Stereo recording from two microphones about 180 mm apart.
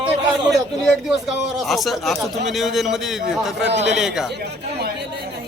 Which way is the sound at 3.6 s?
75° right (ahead or behind).